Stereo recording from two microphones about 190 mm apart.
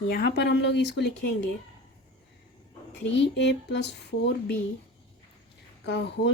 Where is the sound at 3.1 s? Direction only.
65° left (ahead or behind).